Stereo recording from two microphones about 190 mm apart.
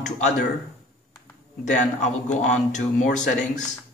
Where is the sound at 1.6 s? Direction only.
40° left (ahead or behind).